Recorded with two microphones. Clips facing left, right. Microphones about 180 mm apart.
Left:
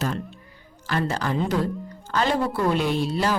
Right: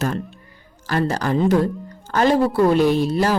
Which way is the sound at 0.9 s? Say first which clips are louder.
Right 5 dB; 40° right (ahead or behind).